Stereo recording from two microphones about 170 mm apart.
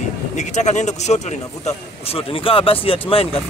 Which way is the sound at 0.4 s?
45° left (ahead or behind).